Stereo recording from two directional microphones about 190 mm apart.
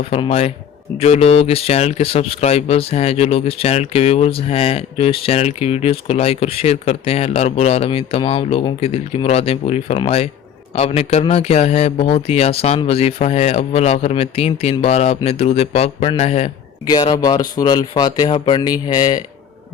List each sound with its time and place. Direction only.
0.1 s speech: 35° left (ahead or behind)
16.8 s speech: 20° left (ahead or behind)